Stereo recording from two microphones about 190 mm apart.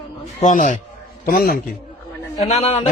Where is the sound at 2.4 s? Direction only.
35° left (ahead or behind).